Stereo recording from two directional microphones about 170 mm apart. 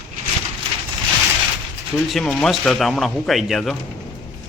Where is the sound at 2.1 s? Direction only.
Centre (ahead or behind).